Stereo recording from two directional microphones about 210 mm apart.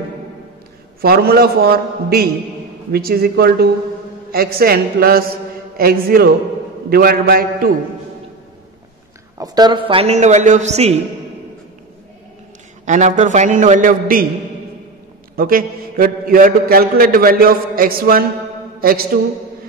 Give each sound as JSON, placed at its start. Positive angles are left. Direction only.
{"t": 1.0, "sound": "a man's voice", "side_deg": -45}
{"t": 9.4, "sound": "a man's voice", "side_deg": -20}
{"t": 12.8, "sound": "a man's voice", "side_deg": -35}
{"t": 15.3, "sound": "a man's voice", "side_deg": -45}